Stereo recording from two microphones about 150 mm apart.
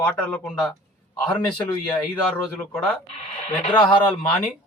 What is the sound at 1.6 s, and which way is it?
A man's voice, 10° left (ahead or behind).